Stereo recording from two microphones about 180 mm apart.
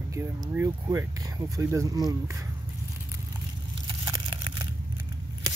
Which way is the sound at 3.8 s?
25° right (ahead or behind).